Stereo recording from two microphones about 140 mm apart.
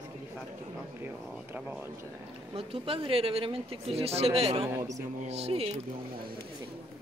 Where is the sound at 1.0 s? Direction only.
15° right (ahead or behind).